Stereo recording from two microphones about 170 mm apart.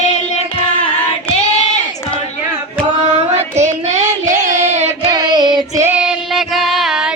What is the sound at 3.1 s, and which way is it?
Child singing, 40° right (ahead or behind).